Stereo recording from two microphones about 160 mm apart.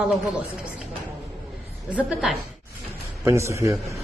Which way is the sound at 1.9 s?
5° right (ahead or behind).